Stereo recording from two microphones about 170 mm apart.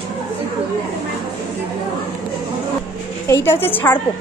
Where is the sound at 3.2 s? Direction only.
15° left (ahead or behind).